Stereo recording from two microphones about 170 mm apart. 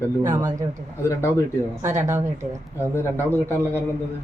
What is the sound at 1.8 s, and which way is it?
Speech, 15° right (ahead or behind).